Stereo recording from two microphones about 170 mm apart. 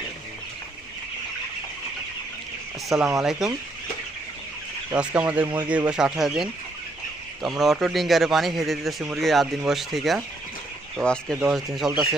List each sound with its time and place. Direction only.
3.2 s a man's voice: centre (ahead or behind)
4.9 s a man's voice: 10° right (ahead or behind)